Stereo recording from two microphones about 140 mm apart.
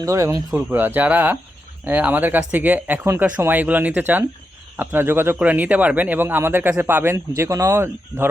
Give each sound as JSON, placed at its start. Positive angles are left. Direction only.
{"t": 0.0, "sound": "speech", "side_deg": -20}